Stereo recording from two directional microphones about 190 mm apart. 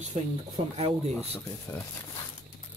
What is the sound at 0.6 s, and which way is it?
Speech, 30° right (ahead or behind).